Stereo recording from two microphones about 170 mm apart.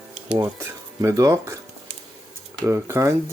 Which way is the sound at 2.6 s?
15° right (ahead or behind).